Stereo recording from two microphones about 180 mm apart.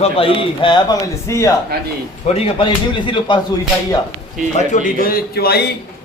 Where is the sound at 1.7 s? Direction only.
60° right (ahead or behind).